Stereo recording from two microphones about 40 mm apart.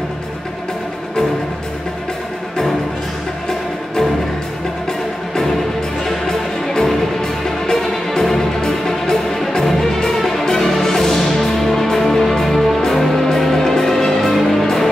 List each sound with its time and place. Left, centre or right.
8.1 s music: centre